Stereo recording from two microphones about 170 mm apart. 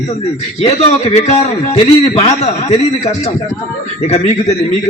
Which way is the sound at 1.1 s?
40° left (ahead or behind).